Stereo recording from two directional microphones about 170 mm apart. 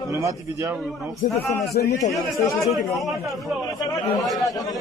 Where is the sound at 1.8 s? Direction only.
55° left (ahead or behind).